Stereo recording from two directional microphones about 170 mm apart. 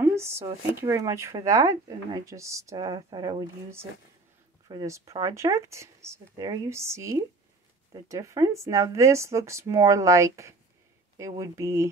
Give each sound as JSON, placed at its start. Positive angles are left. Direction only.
{"t": 0.0, "sound": "speech", "side_deg": -15}